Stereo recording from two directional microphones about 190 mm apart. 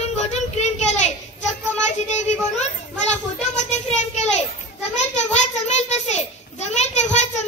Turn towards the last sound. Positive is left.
turn(degrees=35)  # may be behind; listen again after turning